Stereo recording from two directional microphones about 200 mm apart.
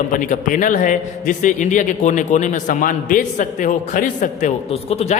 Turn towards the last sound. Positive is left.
turn(degrees=30)  # may be behind; listen again after turning